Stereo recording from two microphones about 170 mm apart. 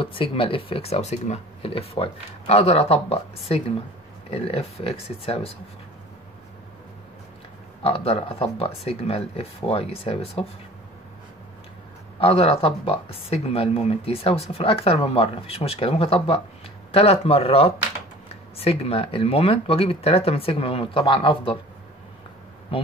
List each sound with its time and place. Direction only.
0.0 s speech: 30° left (ahead or behind)
7.8 s speech: 35° left (ahead or behind)
12.2 s speech: 35° left (ahead or behind)